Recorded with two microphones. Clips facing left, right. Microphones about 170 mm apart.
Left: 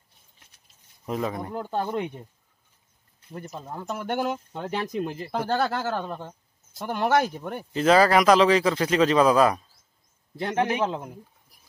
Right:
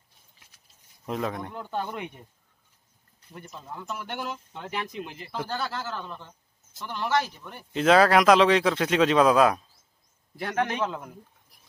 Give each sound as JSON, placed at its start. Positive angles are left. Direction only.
{"t": 1.0, "sound": "a man's voice", "side_deg": 0}
{"t": 1.5, "sound": "speech", "side_deg": 35}
{"t": 3.3, "sound": "speech", "side_deg": 40}
{"t": 5.3, "sound": "a man's voice", "side_deg": 50}
{"t": 7.7, "sound": "a man's voice", "side_deg": 0}
{"t": 10.3, "sound": "a man's voice", "side_deg": 25}